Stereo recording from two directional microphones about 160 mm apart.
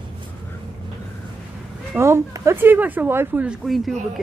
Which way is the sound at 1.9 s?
15° right (ahead or behind).